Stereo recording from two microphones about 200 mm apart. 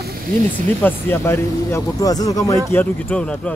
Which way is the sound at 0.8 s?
10° left (ahead or behind).